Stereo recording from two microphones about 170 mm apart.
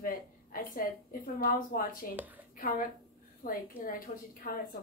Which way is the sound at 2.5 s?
55° left (ahead or behind).